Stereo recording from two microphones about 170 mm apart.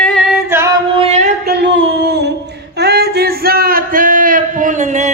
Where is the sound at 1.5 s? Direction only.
85° right.